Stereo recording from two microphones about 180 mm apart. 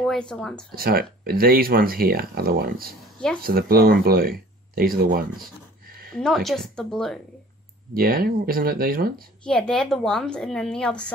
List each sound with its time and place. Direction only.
0.0 s a woman's voice: 5° left (ahead or behind)
0.7 s speech: 55° right (ahead or behind)
6.1 s a woman's voice: centre (ahead or behind)
7.9 s speech: 55° right (ahead or behind)
9.4 s a woman's voice: 5° left (ahead or behind)